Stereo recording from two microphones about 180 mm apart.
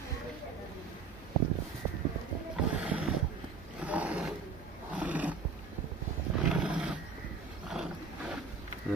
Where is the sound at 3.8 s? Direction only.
5° right (ahead or behind).